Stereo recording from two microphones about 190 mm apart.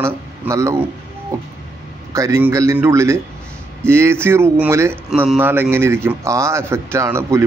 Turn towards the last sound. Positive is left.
turn(degrees=-15)  # may be behind; listen again after turning